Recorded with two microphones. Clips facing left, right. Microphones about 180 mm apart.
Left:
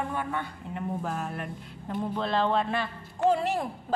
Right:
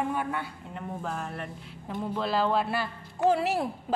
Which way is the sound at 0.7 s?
5° left (ahead or behind).